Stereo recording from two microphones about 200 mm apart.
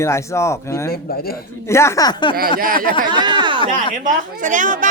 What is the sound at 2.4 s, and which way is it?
Speech, 45° right (ahead or behind).